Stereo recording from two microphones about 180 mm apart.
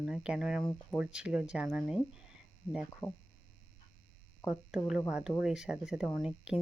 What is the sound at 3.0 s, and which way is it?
Speech, 15° left (ahead or behind).